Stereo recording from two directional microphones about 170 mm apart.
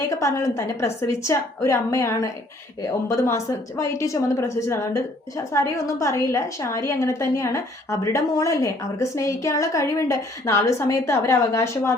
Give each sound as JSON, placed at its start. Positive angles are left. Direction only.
{"t": 0.2, "sound": "a woman's voice", "side_deg": 20}